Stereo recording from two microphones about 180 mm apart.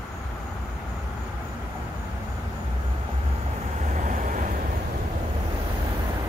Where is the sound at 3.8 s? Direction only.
45° right (ahead or behind).